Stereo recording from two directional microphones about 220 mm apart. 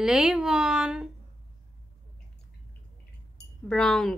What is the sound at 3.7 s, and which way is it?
Speech, centre (ahead or behind).